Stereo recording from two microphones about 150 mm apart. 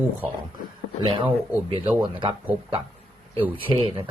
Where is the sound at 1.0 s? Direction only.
35° right (ahead or behind).